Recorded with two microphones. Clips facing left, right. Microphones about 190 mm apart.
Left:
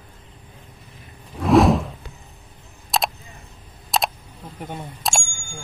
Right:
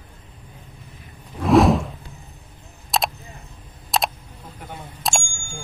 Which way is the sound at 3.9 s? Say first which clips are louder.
Even; centre (ahead or behind).